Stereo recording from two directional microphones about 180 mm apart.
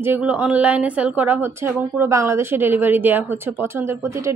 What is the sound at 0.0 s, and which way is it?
A woman's voice, 10° right (ahead or behind).